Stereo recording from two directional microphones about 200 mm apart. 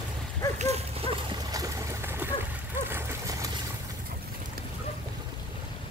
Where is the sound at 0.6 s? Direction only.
30° right (ahead or behind); by 2.3 s 10° right (ahead or behind).